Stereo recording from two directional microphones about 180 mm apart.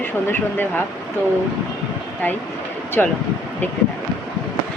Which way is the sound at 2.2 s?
10° left (ahead or behind).